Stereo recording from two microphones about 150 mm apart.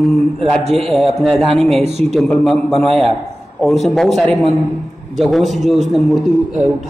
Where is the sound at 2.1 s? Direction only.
Centre (ahead or behind).